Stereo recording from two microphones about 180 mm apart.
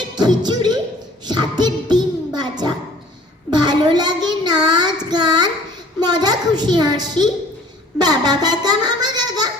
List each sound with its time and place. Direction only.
0.2 s child singing: 25° right (ahead or behind)
1.3 s a child's voice: 25° right (ahead or behind)
3.5 s child singing: 25° right (ahead or behind)
7.9 s a child's voice: 20° right (ahead or behind)